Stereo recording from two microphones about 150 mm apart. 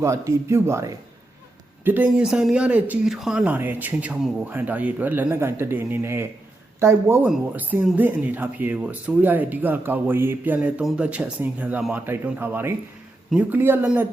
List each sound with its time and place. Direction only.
0.0 s speech: 20° right (ahead or behind)